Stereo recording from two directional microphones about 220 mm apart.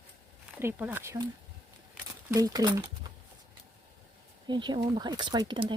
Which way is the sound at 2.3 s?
15° right (ahead or behind).